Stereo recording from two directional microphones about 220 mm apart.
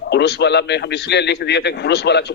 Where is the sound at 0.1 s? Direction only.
50° left (ahead or behind).